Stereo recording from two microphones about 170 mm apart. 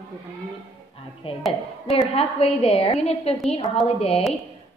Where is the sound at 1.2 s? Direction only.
35° left (ahead or behind).